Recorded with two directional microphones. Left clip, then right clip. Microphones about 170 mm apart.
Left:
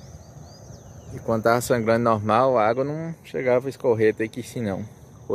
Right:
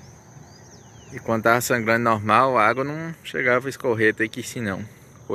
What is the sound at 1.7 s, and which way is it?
Speech, 10° left (ahead or behind).